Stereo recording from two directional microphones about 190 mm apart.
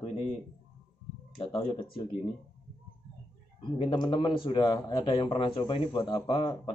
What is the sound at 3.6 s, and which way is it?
A man's voice, 25° left (ahead or behind).